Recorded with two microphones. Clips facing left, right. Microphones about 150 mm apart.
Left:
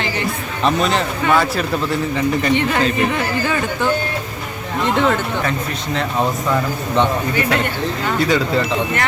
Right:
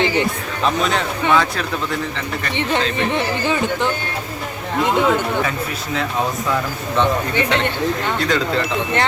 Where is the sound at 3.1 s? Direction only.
20° right (ahead or behind).